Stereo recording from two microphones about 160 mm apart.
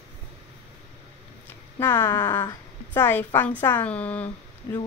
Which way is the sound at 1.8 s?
25° left (ahead or behind).